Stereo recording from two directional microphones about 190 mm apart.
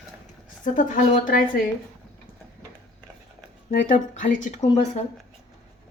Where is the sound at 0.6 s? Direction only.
45° left (ahead or behind).